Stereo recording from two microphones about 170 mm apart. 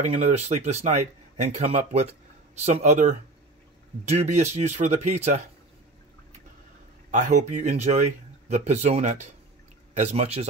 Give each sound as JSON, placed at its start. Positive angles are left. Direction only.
{"t": 0.0, "sound": "speech", "side_deg": -40}
{"t": 7.1, "sound": "speech", "side_deg": -45}